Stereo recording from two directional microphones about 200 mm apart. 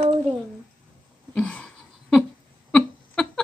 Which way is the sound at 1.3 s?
5° left (ahead or behind).